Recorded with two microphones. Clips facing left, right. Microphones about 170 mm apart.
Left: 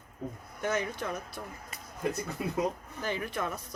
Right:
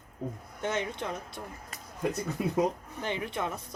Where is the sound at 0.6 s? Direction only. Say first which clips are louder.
Left 1 dB; 25° right (ahead or behind).